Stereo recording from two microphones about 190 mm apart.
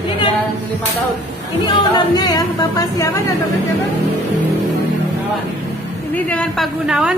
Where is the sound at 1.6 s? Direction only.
25° left (ahead or behind).